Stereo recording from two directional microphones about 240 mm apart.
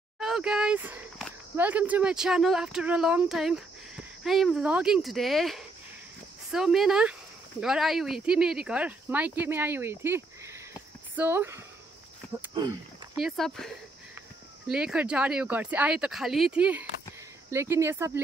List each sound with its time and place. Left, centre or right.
0.2 s speech: centre
13.1 s speech: centre
14.7 s speech: centre